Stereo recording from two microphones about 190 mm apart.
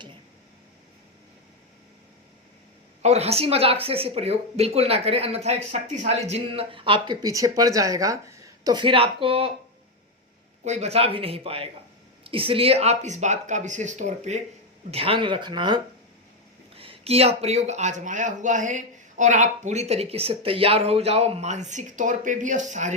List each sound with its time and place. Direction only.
3.0 s speech: 35° right (ahead or behind)
10.6 s speech: 35° right (ahead or behind)